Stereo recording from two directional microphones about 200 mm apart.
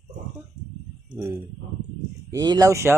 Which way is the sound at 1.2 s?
15° right (ahead or behind).